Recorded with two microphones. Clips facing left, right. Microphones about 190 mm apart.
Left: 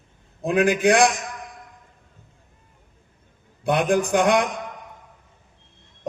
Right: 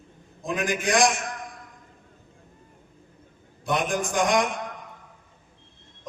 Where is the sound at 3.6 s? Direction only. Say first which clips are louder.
Left 6 dB; 65° left (ahead or behind).